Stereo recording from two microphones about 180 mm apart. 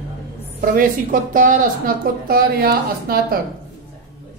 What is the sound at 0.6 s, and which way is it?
A woman's voice, 50° right (ahead or behind).